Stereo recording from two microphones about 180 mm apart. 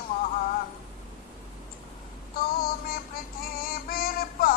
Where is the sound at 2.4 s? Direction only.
55° left (ahead or behind).